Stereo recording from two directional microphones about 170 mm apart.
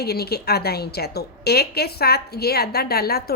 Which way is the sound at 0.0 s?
70° left (ahead or behind).